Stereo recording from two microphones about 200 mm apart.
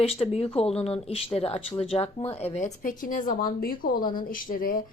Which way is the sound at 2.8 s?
40° left (ahead or behind).